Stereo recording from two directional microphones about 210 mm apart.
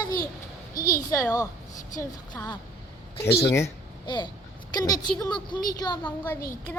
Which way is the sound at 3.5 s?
15° left (ahead or behind).